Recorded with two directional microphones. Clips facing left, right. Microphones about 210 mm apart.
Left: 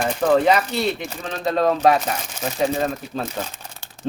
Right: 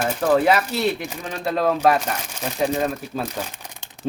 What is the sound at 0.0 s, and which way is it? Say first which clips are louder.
Speech: left 1 dB; 5° right (ahead or behind).